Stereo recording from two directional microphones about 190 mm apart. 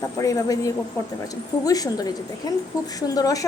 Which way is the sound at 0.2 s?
15° left (ahead or behind).